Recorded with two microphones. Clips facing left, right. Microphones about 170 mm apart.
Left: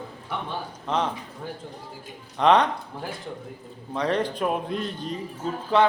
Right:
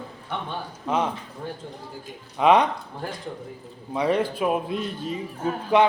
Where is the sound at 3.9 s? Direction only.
10° right (ahead or behind).